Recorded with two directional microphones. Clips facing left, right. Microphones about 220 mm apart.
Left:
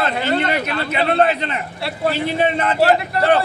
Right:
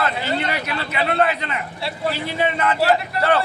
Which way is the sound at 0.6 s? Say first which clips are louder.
Left 4 dB; 25° left (ahead or behind).